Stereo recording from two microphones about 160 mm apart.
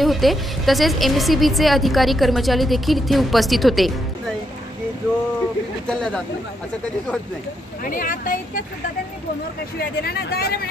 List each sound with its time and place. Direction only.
0.0 s a woman's voice: centre (ahead or behind)
5.9 s a woman's voice: 5° left (ahead or behind)
7.8 s speech: 60° left (ahead or behind)
9.8 s speech: 70° left (ahead or behind)